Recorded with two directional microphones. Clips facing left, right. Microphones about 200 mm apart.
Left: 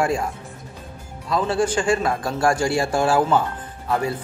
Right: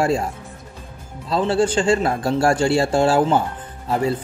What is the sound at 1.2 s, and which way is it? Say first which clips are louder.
Speech: right 2 dB; 30° right (ahead or behind).